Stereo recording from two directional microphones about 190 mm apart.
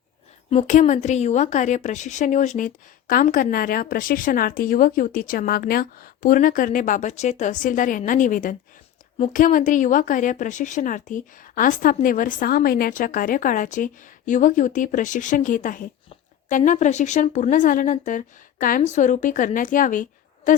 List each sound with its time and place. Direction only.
0.5 s a woman's voice: 40° left (ahead or behind)